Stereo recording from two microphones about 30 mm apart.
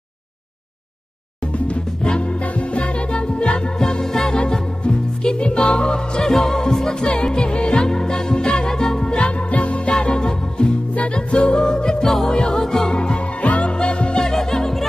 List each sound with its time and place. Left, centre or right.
2.0 s music: left; by 4.4 s centre
4.8 s music: left
7.3 s music: left
9.1 s music: left
10.0 s music: left
14.2 s music: centre